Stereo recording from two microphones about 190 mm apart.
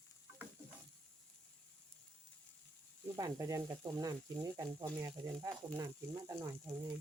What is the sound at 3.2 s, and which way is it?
Speech, 15° right (ahead or behind).